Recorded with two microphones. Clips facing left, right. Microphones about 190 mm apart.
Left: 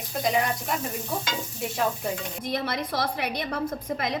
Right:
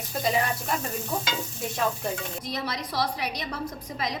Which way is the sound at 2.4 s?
55° left (ahead or behind).